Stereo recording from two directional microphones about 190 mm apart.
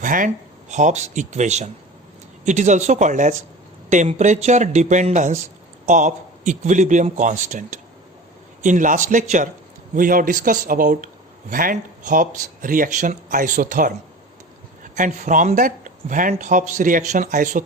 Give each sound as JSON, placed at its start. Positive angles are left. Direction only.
{"t": 0.0, "sound": "a man's voice", "side_deg": -45}
{"t": 14.9, "sound": "speech", "side_deg": -40}